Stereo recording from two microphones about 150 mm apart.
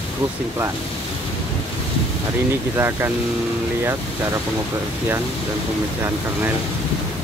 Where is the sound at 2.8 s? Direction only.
15° right (ahead or behind).